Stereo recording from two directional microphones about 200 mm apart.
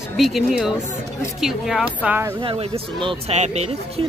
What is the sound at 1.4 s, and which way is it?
Speech, centre (ahead or behind).